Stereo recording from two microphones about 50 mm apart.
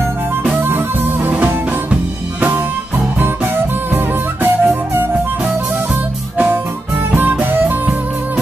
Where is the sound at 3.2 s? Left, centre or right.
Right.